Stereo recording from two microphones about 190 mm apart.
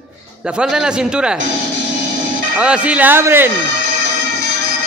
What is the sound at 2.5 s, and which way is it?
Speech, 5° right (ahead or behind).